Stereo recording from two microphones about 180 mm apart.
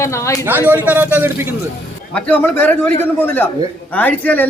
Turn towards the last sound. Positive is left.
turn(degrees=10)  # may be behind; listen again after turning